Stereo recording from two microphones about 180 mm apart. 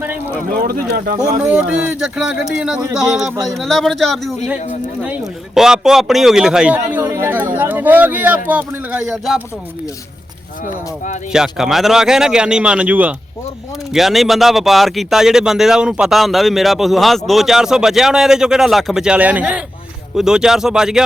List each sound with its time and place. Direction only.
0.5 s speech: 55° right (ahead or behind)
1.5 s a man's voice: 5° right (ahead or behind)
11.3 s speech: 5° right (ahead or behind)